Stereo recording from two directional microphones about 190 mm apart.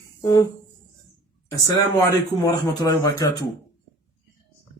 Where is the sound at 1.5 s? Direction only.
15° left (ahead or behind).